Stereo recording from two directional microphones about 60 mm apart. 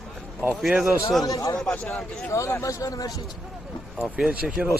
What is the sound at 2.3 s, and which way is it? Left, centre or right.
Speech, left.